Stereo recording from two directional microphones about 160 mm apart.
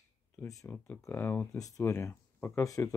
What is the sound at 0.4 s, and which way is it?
Speech, 15° left (ahead or behind).